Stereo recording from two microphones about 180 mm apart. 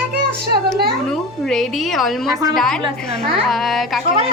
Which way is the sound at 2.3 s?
20° right (ahead or behind).